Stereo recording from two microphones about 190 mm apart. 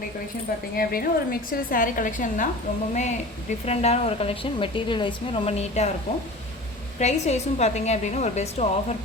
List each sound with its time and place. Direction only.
0.8 s a woman's voice: 50° left (ahead or behind); by 5.9 s 35° left (ahead or behind)
7.0 s speech: 35° left (ahead or behind)